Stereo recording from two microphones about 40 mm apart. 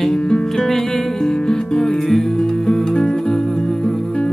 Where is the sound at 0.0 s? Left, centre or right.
Centre.